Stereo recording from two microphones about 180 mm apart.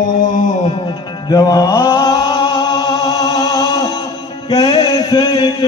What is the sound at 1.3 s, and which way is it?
Chant, 20° left (ahead or behind).